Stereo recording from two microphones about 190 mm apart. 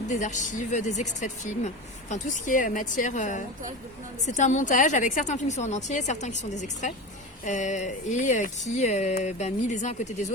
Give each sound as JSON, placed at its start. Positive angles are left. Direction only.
{"t": 0.1, "sound": "speech", "side_deg": 40}